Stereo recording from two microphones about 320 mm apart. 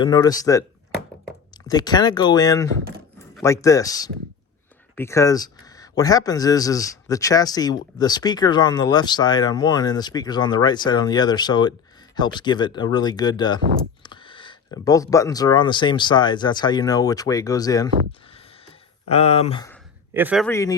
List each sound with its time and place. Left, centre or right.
0.0 s speech: centre
1.6 s speech: centre
18.6 s a sound: centre
20.1 s a man's voice: centre